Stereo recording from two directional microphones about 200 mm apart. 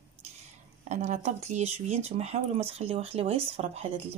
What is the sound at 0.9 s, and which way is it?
Speech, 35° right (ahead or behind).